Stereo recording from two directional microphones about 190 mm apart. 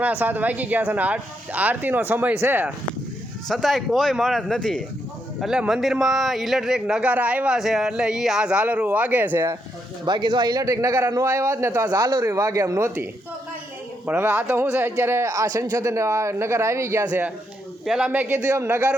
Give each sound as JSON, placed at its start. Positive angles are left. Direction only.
{"t": 0.0, "sound": "a man's voice", "side_deg": -10}
{"t": 3.5, "sound": "speech", "side_deg": 0}
{"t": 10.1, "sound": "a man's voice", "side_deg": -25}
{"t": 14.1, "sound": "a man's voice", "side_deg": -10}